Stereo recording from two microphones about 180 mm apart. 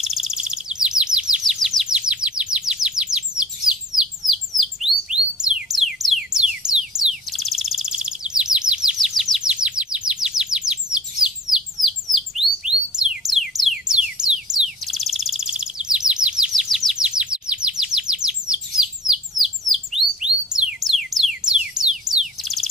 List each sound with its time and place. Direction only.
0.0 s chirp: centre (ahead or behind)